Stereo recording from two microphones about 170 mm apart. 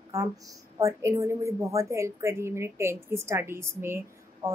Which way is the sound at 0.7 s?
15° right (ahead or behind).